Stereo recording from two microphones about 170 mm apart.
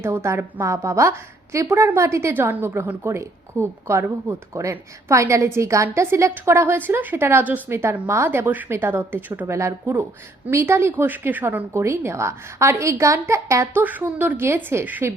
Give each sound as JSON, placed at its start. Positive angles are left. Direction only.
{"t": 0.0, "sound": "a woman's voice", "side_deg": -15}